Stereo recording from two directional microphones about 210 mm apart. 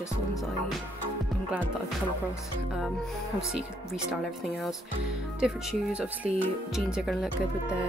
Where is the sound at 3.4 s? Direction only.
5° right (ahead or behind).